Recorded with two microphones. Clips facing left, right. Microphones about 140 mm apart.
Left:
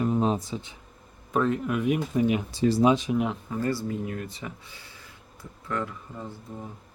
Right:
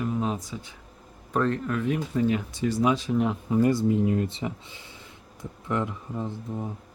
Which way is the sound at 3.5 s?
15° right (ahead or behind).